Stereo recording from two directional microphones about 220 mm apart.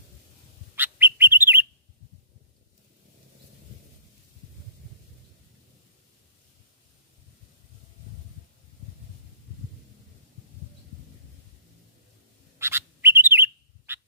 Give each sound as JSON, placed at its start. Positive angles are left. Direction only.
{"t": 0.8, "sound": "bird", "side_deg": -10}
{"t": 12.5, "sound": "bird", "side_deg": -10}